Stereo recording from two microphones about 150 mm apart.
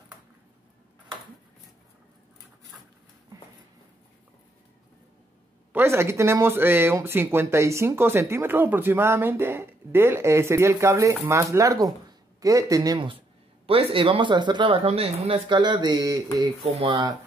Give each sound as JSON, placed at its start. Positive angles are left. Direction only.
{"t": 5.7, "sound": "speech", "side_deg": -15}
{"t": 13.7, "sound": "speech", "side_deg": -40}